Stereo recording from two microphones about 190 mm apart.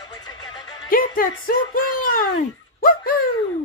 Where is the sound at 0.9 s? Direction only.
50° left (ahead or behind).